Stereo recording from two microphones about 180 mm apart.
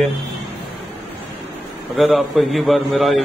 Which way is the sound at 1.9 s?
Centre (ahead or behind).